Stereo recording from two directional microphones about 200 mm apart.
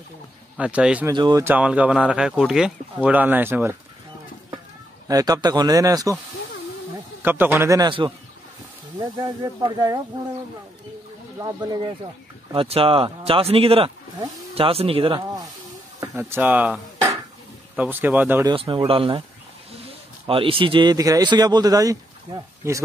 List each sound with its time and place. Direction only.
0.6 s speech: 5° right (ahead or behind)
1.1 s speech: 20° right (ahead or behind)
5.0 s speech: 15° right (ahead or behind)
7.2 s speech: 10° right (ahead or behind)
11.3 s speech: 20° right (ahead or behind)
16.2 s a sound: 10° right (ahead or behind)
17.7 s speech: 10° right (ahead or behind)
18.5 s speech: 25° right (ahead or behind)
20.2 s speech: 25° right (ahead or behind)